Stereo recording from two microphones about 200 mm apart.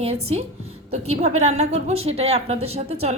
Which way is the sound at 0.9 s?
30° right (ahead or behind).